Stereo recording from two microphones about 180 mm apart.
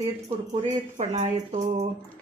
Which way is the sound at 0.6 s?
40° right (ahead or behind).